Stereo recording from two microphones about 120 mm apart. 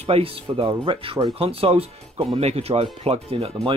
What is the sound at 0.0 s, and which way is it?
Speech, 55° right (ahead or behind).